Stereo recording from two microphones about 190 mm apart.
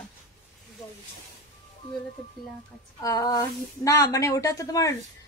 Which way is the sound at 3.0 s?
20° left (ahead or behind).